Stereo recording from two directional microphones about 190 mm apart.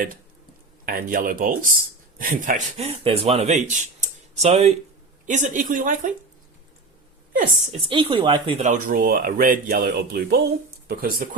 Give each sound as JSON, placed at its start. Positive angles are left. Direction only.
{"t": 0.9, "sound": "speech", "side_deg": -50}
{"t": 7.7, "sound": "speech", "side_deg": -25}